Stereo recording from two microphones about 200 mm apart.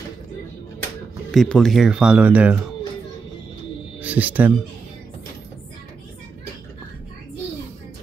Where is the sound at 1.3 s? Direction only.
5° left (ahead or behind).